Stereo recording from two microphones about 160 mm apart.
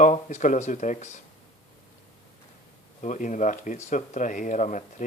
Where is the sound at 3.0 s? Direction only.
50° left (ahead or behind).